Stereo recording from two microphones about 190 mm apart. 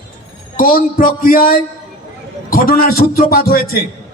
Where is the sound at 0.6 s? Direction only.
50° left (ahead or behind).